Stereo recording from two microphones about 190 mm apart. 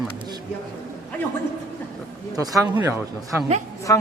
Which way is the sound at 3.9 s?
15° left (ahead or behind).